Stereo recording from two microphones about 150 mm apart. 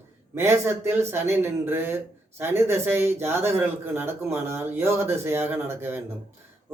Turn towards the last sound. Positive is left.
turn(degrees=-15)  # may be behind; listen again after turning